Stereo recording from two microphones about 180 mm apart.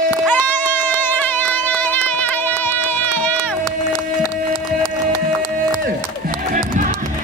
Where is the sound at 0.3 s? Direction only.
10° left (ahead or behind).